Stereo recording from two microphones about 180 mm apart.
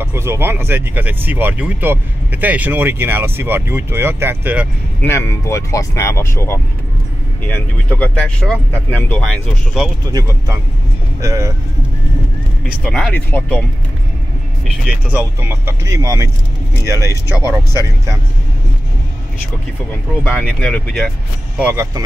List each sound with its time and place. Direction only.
0.0 s speech: 15° right (ahead or behind)
5.0 s speech: 15° left (ahead or behind)
7.9 s speech: 5° left (ahead or behind)
10.1 s speech: 20° right (ahead or behind)
12.8 s speech: 5° left (ahead or behind)
15.0 s speech: 10° right (ahead or behind)
17.4 s speech: 15° right (ahead or behind)
20.2 s speech: 5° left (ahead or behind)
21.5 s speech: 10° right (ahead or behind)